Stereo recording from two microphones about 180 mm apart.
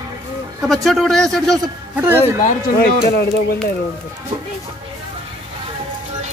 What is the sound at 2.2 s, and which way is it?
Speech, 35° left (ahead or behind).